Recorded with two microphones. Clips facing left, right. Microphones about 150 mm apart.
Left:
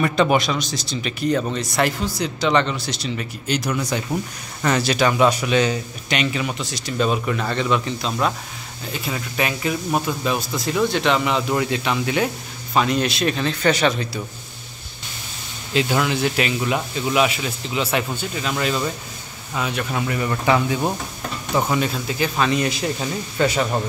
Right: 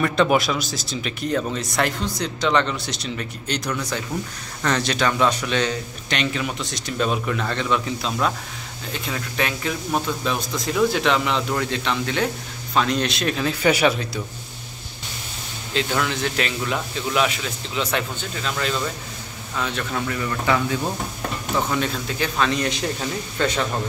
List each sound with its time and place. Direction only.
0.0 s speech: centre (ahead or behind)
15.7 s speech: 10° left (ahead or behind)
21.5 s speech: 10° left (ahead or behind)